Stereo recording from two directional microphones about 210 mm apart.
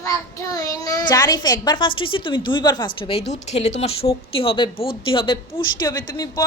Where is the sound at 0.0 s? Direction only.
15° left (ahead or behind).